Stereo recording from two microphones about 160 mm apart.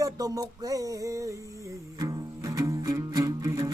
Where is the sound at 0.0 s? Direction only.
20° right (ahead or behind).